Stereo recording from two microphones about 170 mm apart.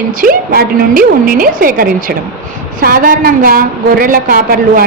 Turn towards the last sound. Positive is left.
turn(degrees=-55)  # may be behind; listen again after turning